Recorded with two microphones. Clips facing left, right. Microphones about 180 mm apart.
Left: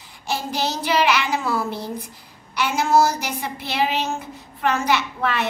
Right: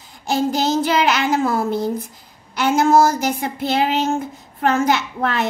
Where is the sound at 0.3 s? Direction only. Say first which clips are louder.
Right 7 dB; 45° right (ahead or behind).